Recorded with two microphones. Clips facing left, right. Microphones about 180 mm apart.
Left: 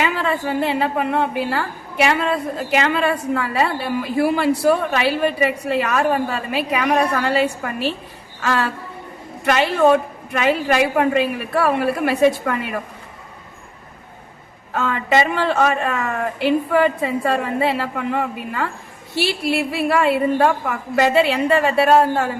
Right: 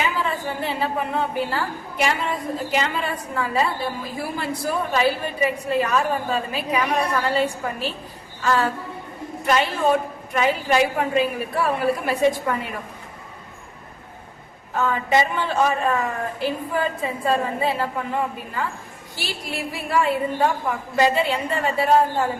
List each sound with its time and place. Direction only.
0.0 s a woman's voice: 75° left (ahead or behind)
14.7 s a woman's voice: 75° left (ahead or behind)